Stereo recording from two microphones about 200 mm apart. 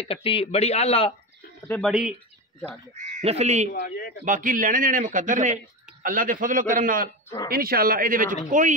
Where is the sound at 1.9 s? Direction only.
5° right (ahead or behind).